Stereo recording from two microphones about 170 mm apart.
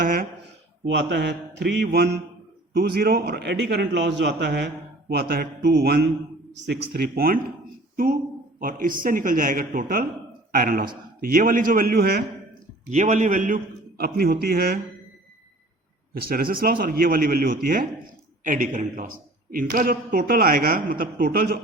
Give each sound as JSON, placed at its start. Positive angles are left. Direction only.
{"t": 0.0, "sound": "speech", "side_deg": -55}
{"t": 0.9, "sound": "a man's voice", "side_deg": -90}
{"t": 8.5, "sound": "a man's voice", "side_deg": -55}
{"t": 12.9, "sound": "a man's voice", "side_deg": -45}
{"t": 14.0, "sound": "a man's voice", "side_deg": -65}
{"t": 16.1, "sound": "a man's voice", "side_deg": -60}